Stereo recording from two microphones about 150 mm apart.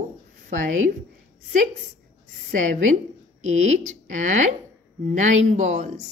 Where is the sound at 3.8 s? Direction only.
60° right (ahead or behind).